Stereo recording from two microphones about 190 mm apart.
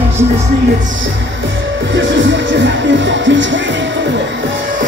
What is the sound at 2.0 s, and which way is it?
Speech, 75° right (ahead or behind).